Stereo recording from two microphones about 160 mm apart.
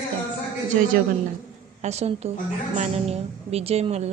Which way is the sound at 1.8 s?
40° right (ahead or behind).